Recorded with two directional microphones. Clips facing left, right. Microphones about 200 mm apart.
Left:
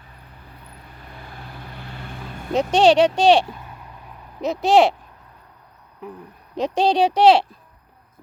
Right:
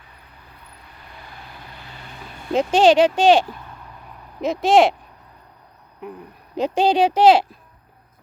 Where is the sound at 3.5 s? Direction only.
10° left (ahead or behind).